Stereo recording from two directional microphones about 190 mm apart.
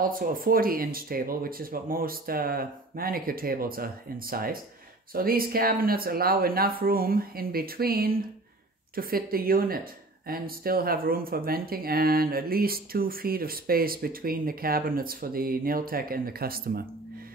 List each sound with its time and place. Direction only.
0.0 s speech: 50° right (ahead or behind)